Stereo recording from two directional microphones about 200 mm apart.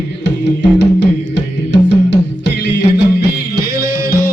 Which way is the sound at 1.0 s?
60° left (ahead or behind).